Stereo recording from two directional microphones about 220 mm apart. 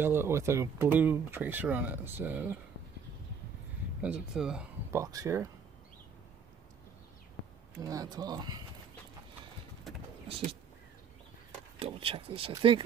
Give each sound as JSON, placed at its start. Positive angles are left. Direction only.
{"t": 0.0, "sound": "speech", "side_deg": -10}
{"t": 4.0, "sound": "speech", "side_deg": -5}
{"t": 5.0, "sound": "speech", "side_deg": -15}
{"t": 7.8, "sound": "speech", "side_deg": -15}
{"t": 9.9, "sound": "vehicle", "side_deg": 0}
{"t": 10.2, "sound": "vehicle", "side_deg": -25}
{"t": 11.8, "sound": "speech", "side_deg": -25}